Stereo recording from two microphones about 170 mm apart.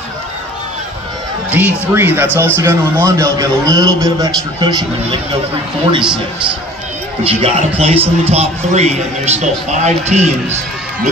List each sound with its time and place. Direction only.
1.5 s a man's voice: 10° right (ahead or behind)
7.2 s a man's voice: 35° right (ahead or behind)